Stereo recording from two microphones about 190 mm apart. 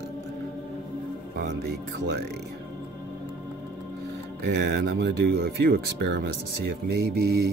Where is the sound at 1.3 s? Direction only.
60° right (ahead or behind).